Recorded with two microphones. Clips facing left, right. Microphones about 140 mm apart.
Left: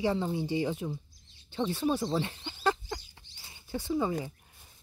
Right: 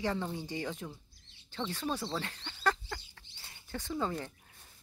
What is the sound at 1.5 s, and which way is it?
Chicken, 15° left (ahead or behind).